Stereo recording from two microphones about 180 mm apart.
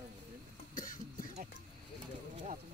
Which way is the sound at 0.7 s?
50° left (ahead or behind).